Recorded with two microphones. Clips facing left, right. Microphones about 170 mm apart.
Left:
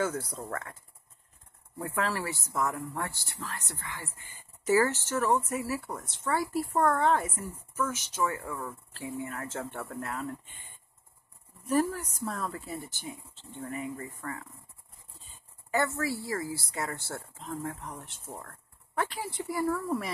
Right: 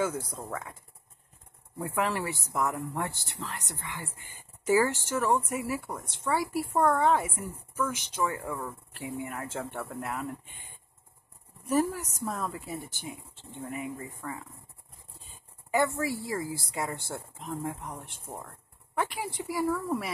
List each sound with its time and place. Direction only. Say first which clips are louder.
0.3 s speech: even; 10° right (ahead or behind)
1.8 s speech: right 2 dB; 15° right (ahead or behind)
11.6 s speech: even; 10° right (ahead or behind)
15.7 s speech: right 2 dB; 15° right (ahead or behind)